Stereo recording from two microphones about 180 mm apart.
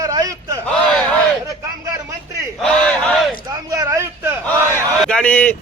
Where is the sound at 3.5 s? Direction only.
20° right (ahead or behind).